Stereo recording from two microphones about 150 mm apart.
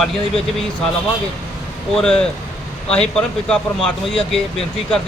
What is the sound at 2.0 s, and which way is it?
Speech, 5° left (ahead or behind).